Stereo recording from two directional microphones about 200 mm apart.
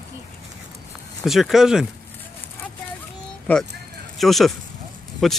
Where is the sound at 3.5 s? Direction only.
5° left (ahead or behind).